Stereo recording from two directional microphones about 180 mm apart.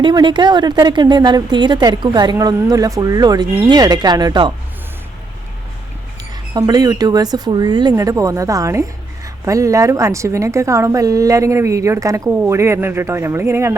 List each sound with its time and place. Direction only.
0.0 s speech: 25° right (ahead or behind)
6.5 s a woman's voice: 20° right (ahead or behind)